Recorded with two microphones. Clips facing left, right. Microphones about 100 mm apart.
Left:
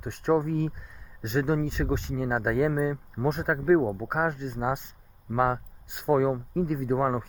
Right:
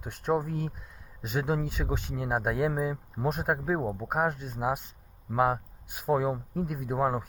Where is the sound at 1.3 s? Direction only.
45° right (ahead or behind).